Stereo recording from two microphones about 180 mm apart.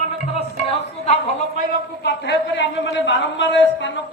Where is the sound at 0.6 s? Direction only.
35° left (ahead or behind).